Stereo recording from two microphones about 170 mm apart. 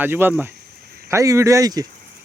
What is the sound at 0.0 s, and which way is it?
Speech, 10° right (ahead or behind).